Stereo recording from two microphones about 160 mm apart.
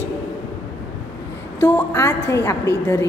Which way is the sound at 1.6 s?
15° left (ahead or behind).